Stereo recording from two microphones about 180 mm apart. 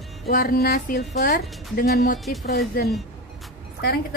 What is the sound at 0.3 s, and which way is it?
Speech, 55° left (ahead or behind).